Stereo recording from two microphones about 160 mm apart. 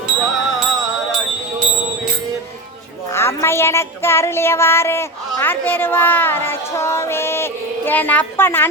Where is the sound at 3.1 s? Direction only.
15° left (ahead or behind).